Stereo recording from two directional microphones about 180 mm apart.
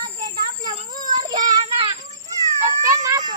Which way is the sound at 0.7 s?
25° right (ahead or behind).